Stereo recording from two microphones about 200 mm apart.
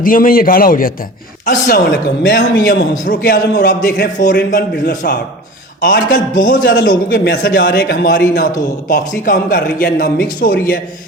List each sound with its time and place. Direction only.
0.0 s speech: 45° left (ahead or behind)
2.9 s speech: 45° left (ahead or behind)
8.9 s speech: 40° left (ahead or behind)